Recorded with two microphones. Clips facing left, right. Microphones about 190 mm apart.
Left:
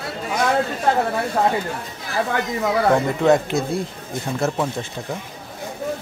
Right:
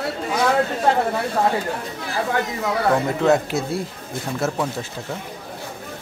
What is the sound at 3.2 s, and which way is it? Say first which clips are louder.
Speech: left 2 dB; 5° right (ahead or behind).